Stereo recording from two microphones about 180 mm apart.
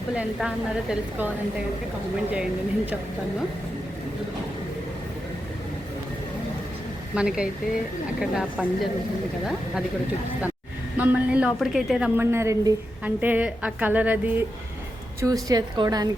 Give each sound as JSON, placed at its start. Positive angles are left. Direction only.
{"t": 0.2, "sound": "a woman's voice", "side_deg": -5}
{"t": 2.3, "sound": "a woman's voice", "side_deg": -5}
{"t": 7.1, "sound": "a woman's voice", "side_deg": -5}
{"t": 10.9, "sound": "a woman's voice", "side_deg": -10}
{"t": 15.2, "sound": "a woman's voice", "side_deg": -20}